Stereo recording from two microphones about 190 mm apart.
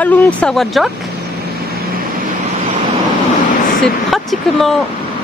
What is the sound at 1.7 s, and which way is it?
Vehicle, 55° right (ahead or behind).